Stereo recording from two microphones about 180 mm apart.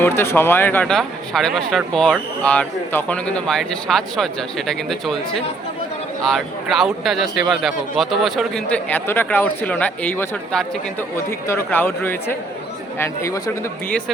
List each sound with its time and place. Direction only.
0.2 s a man's voice: 15° left (ahead or behind)